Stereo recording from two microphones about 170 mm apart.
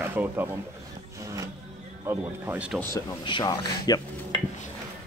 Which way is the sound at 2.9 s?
25° left (ahead or behind).